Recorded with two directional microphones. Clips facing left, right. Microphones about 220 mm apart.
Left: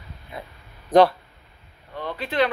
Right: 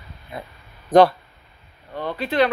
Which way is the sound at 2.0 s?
40° right (ahead or behind).